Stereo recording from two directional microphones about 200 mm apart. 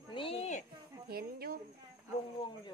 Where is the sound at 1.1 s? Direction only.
50° right (ahead or behind).